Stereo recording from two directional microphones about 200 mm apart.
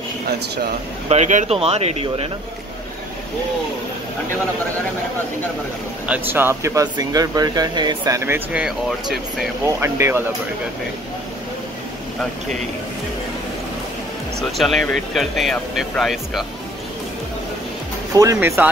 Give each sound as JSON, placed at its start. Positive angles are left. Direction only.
{"t": 1.0, "sound": "speech", "side_deg": -35}
{"t": 6.0, "sound": "speech", "side_deg": -10}
{"t": 14.6, "sound": "speech", "side_deg": 0}
{"t": 18.1, "sound": "speech", "side_deg": -15}